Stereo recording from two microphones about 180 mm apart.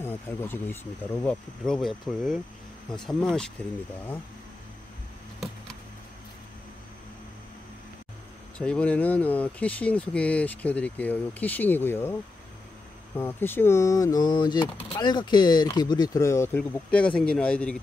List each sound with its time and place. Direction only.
0.0 s speech: 15° left (ahead or behind)
8.5 s speech: 5° left (ahead or behind)